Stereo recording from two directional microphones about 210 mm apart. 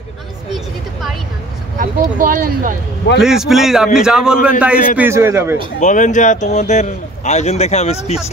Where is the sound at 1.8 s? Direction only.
40° right (ahead or behind).